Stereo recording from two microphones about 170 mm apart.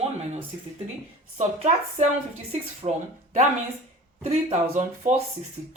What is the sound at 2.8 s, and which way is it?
Speech, 35° right (ahead or behind).